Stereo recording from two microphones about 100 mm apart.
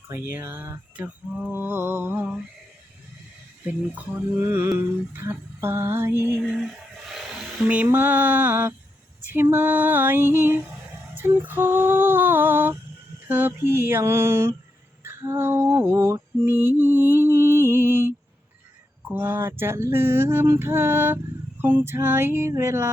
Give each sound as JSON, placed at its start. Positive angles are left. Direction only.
{"t": 0.1, "sound": "speech", "side_deg": -20}
{"t": 3.7, "sound": "speech", "side_deg": -15}
{"t": 7.1, "sound": "music", "side_deg": -5}
{"t": 7.9, "sound": "speech", "side_deg": -20}
{"t": 15.0, "sound": "lullaby", "side_deg": -25}
{"t": 19.0, "sound": "speech", "side_deg": -20}